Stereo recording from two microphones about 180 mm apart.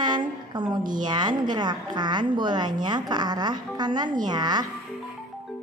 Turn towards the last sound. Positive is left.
turn(degrees=-25)  # may be behind; listen again after turning